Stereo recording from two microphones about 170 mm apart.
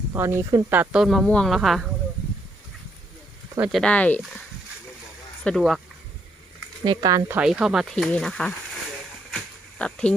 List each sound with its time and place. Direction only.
0.1 s speech: 15° right (ahead or behind)
3.6 s speech: centre (ahead or behind)
6.8 s speech: 25° right (ahead or behind)
7.3 s speech: 5° right (ahead or behind)
9.3 s a sound: 5° left (ahead or behind)